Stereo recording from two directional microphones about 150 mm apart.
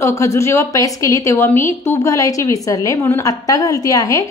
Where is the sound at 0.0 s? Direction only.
20° left (ahead or behind).